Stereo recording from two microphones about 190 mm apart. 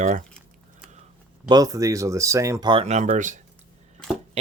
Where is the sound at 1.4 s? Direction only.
20° right (ahead or behind).